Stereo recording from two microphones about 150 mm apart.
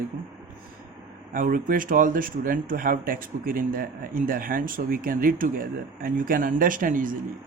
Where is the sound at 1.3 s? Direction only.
65° right (ahead or behind).